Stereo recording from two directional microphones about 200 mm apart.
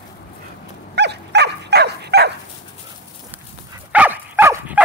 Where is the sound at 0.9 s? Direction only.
55° right (ahead or behind).